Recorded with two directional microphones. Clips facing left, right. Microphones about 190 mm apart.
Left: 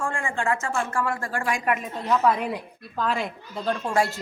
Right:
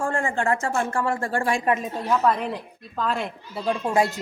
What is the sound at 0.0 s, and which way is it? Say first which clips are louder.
Speech: right 3 dB; 40° right (ahead or behind).